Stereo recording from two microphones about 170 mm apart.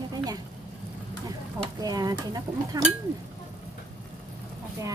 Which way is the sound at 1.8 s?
20° right (ahead or behind).